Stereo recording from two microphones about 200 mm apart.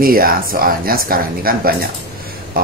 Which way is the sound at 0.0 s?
45° right (ahead or behind).